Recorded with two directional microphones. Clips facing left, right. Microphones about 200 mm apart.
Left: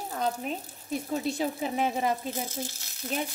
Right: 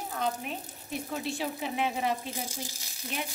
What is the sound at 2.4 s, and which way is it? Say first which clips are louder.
Speech: left 4 dB; 10° right (ahead or behind).